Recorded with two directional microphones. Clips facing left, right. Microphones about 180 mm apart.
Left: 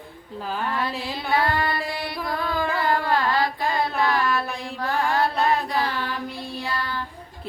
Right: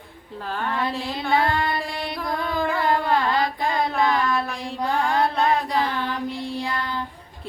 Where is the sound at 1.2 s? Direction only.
20° right (ahead or behind).